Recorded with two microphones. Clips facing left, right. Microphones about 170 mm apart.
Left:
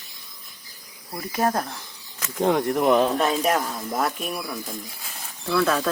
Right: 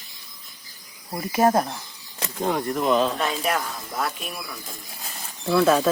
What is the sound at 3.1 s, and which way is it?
Speech, 40° left (ahead or behind).